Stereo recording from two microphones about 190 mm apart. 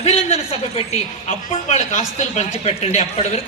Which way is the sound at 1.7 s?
40° left (ahead or behind).